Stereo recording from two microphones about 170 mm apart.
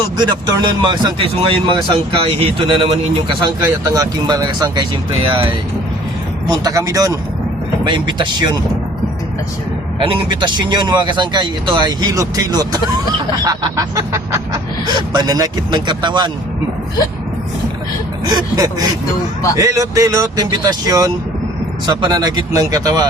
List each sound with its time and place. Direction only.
0.2 s speech: 25° right (ahead or behind)
6.5 s speech: 20° right (ahead or behind)
10.0 s speech: 30° right (ahead or behind)
18.3 s speech: 25° right (ahead or behind)